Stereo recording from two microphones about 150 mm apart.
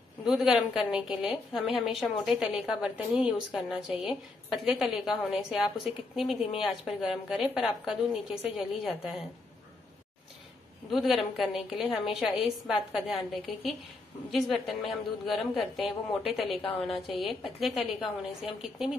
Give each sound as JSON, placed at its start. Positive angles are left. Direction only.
{"t": 0.2, "sound": "a woman's voice", "side_deg": -5}
{"t": 10.9, "sound": "a woman's voice", "side_deg": 0}
{"t": 16.4, "sound": "a woman's voice", "side_deg": 40}
{"t": 17.2, "sound": "a woman's voice", "side_deg": 0}